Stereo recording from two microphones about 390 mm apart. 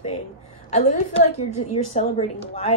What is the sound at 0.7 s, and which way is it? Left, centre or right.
A woman's voice, centre.